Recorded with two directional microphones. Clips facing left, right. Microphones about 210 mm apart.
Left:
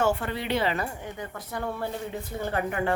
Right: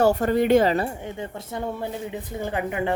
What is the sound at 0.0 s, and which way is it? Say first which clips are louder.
A woman's voice: right 7 dB; 40° right (ahead or behind).